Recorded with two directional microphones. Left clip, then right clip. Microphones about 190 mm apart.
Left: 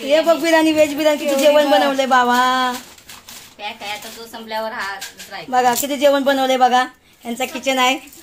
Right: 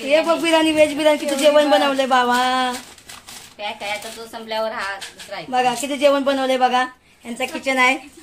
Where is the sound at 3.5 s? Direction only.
25° right (ahead or behind).